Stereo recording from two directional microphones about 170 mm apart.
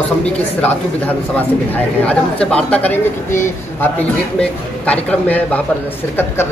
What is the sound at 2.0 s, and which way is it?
Speech, 5° left (ahead or behind).